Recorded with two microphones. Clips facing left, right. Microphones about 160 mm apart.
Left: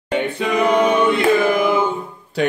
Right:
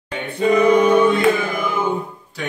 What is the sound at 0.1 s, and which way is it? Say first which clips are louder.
Singing: right 2 dB; 80° left.